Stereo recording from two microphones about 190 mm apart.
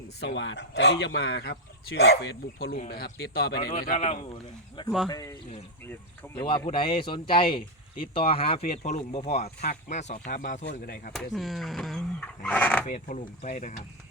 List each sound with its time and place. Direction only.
0.2 s speech: 65° left (ahead or behind)
2.7 s speech: 45° left (ahead or behind)
3.7 s speech: 40° left (ahead or behind); by 6.3 s 10° left (ahead or behind)
6.3 s speech: 25° left (ahead or behind); by 10.7 s 40° left (ahead or behind)
10.7 s speech: 55° left (ahead or behind)
11.1 s speech: centre (ahead or behind)
12.9 s speech: 40° left (ahead or behind)